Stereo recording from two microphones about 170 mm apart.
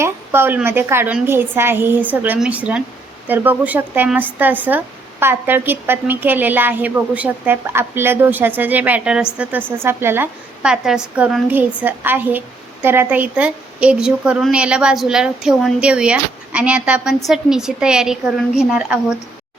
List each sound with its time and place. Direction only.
0.0 s a woman's voice: 15° right (ahead or behind)